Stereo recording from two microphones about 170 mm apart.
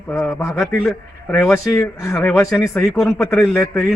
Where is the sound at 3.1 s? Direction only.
Centre (ahead or behind).